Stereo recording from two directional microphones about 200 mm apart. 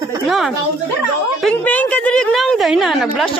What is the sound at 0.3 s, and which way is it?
Speech, centre (ahead or behind).